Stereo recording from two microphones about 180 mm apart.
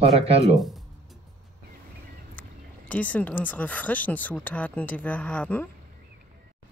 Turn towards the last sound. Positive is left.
turn(degrees=5)  # may be behind; listen again after turning